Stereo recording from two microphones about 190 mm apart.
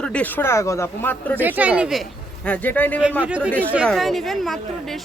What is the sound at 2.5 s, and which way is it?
Speech, 10° left (ahead or behind).